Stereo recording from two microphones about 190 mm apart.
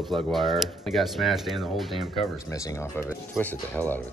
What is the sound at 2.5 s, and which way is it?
Speech, 15° left (ahead or behind).